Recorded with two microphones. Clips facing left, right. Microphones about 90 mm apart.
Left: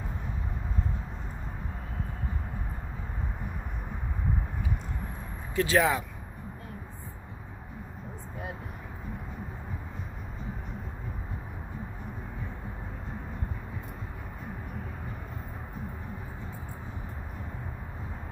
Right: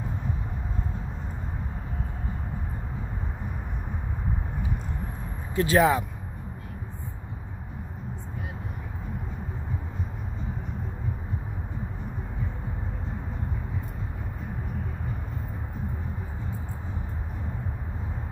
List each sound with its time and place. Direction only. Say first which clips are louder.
5.5 s speech: right 4 dB; 35° right (ahead or behind)